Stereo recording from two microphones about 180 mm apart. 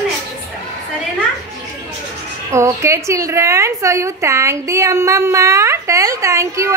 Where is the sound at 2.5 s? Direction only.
15° right (ahead or behind).